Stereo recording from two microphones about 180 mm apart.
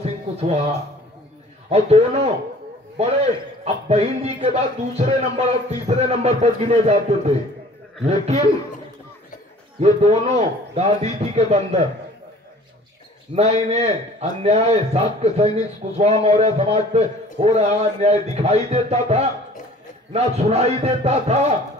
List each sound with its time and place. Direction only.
0.0 s a sound: 35° right (ahead or behind)
1.7 s a man's voice: 35° right (ahead or behind)
9.8 s a man's voice: 35° right (ahead or behind)
13.3 s a man's voice: 35° right (ahead or behind)